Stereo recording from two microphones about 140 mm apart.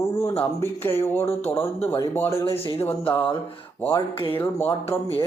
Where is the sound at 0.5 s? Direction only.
15° left (ahead or behind).